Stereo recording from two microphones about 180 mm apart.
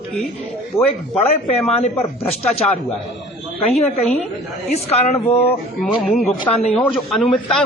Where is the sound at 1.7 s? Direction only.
35° left (ahead or behind).